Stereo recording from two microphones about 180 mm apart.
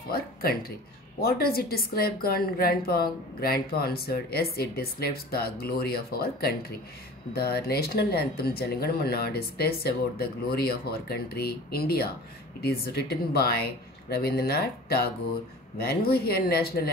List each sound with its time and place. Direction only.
0.1 s a woman's voice: 55° left (ahead or behind)